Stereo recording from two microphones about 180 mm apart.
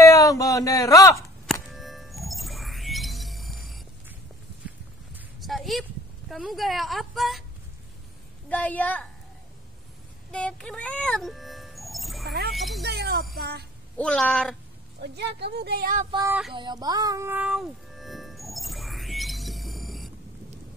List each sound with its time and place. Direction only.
0.0 s a sound: 20° left (ahead or behind)
1.1 s music: centre (ahead or behind)
5.1 s a sound: centre (ahead or behind)
8.5 s a woman's voice: 10° left (ahead or behind)
10.3 s music: 5° left (ahead or behind)
12.3 s a sound: 60° right (ahead or behind)
12.5 s a sound: centre (ahead or behind)
12.8 s music: 65° right (ahead or behind)
13.9 s speech: 5° left (ahead or behind)
15.0 s speech: 65° right (ahead or behind); by 16.1 s 50° right (ahead or behind)
16.3 s speech: 5° right (ahead or behind)
16.5 s music: 25° right (ahead or behind); by 20.1 s centre (ahead or behind)